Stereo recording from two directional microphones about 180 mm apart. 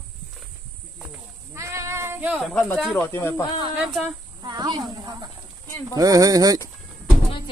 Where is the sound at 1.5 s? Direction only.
15° right (ahead or behind); by 3.0 s 5° left (ahead or behind).